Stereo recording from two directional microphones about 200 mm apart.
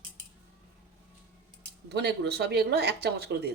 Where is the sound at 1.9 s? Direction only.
55° right (ahead or behind).